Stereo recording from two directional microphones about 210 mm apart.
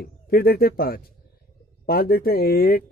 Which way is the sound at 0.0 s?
45° left (ahead or behind).